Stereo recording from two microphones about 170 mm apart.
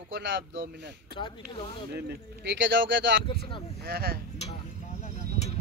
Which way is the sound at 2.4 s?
90° right.